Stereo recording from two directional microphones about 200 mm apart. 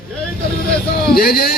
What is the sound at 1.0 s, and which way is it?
Speech, 50° left (ahead or behind).